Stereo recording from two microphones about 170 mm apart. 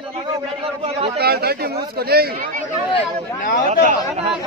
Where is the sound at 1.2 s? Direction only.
65° right (ahead or behind).